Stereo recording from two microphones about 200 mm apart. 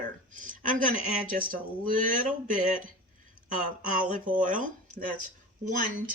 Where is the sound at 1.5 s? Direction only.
45° right (ahead or behind).